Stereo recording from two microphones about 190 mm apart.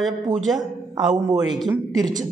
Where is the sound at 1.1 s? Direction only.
20° right (ahead or behind).